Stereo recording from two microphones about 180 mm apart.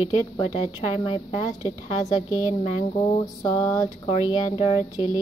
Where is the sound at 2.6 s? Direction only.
30° left (ahead or behind).